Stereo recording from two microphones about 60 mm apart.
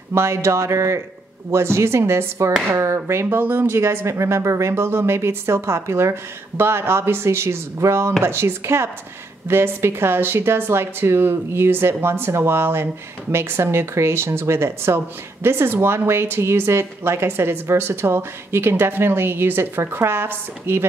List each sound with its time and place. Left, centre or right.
0.1 s speech: right